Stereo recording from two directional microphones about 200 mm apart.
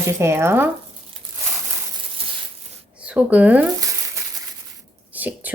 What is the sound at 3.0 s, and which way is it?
Speech, 5° right (ahead or behind).